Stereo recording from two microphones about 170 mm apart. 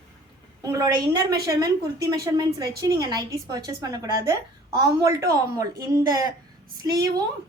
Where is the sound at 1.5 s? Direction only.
25° right (ahead or behind).